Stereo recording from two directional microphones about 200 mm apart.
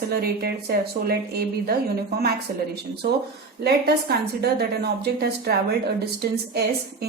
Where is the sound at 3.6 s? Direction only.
55° right (ahead or behind).